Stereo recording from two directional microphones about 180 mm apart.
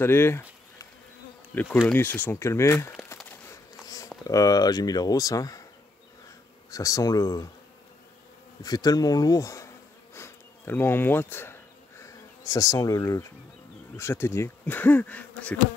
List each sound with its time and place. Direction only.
0.0 s a sound: 15° left (ahead or behind)
1.5 s bee: 10° left (ahead or behind)
2.0 s speech: 10° left (ahead or behind)
3.3 s a sound: 15° left (ahead or behind)
4.2 s speech: 20° left (ahead or behind)
6.7 s speech: 20° left (ahead or behind)
8.6 s speech: 20° left (ahead or behind)
10.1 s insect: 15° left (ahead or behind)
13.9 s speech: 15° left (ahead or behind)